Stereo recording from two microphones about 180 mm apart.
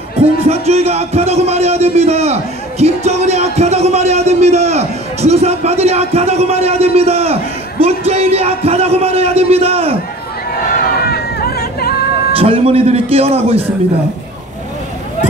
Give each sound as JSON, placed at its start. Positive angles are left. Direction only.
{"t": 0.2, "sound": "a man's voice", "side_deg": -35}
{"t": 10.7, "sound": "crowd", "side_deg": 55}
{"t": 12.3, "sound": "a man's voice", "side_deg": -30}